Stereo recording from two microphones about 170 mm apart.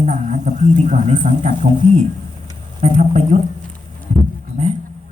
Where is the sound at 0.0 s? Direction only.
45° right (ahead or behind).